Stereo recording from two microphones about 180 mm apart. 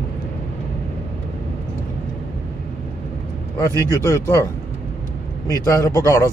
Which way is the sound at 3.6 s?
20° left (ahead or behind).